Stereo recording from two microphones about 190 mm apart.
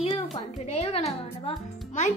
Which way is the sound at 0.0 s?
30° left (ahead or behind).